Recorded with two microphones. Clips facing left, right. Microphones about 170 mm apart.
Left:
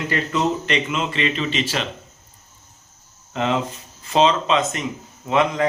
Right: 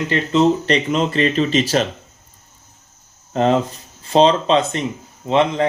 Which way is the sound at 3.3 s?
40° right (ahead or behind).